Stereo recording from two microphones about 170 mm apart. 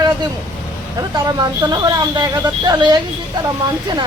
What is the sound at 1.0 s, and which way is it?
Speech, 20° right (ahead or behind).